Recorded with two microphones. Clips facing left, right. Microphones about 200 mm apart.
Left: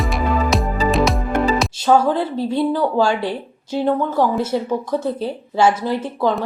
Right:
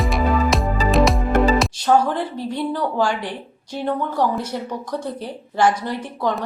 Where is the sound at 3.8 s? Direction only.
5° left (ahead or behind).